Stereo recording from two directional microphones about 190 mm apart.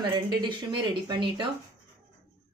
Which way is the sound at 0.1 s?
25° right (ahead or behind).